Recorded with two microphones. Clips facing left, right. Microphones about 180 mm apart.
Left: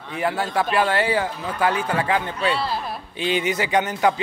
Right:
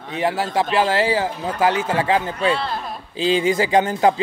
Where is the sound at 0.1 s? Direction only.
20° right (ahead or behind).